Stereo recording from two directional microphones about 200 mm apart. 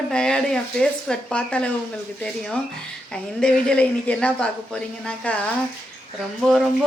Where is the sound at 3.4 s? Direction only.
5° left (ahead or behind).